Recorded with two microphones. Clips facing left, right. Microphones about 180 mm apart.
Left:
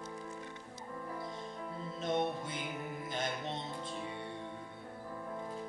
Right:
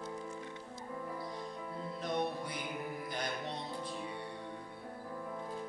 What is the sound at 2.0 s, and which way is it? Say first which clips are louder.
Music: left 2 dB; 25° left (ahead or behind).